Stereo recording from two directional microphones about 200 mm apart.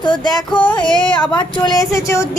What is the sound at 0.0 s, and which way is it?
Music, 20° left (ahead or behind).